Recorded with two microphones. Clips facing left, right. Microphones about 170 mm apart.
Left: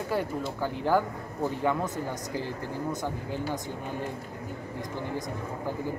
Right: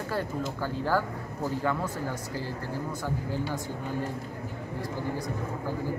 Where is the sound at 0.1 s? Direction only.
15° left (ahead or behind).